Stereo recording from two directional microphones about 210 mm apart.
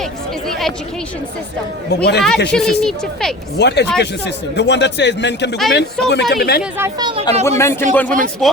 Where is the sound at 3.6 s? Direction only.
55° left (ahead or behind).